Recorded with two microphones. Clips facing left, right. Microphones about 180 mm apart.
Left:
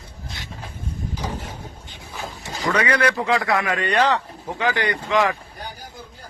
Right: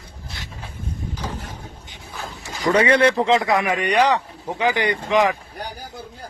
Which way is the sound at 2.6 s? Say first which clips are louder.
Right 5 dB; 25° right (ahead or behind).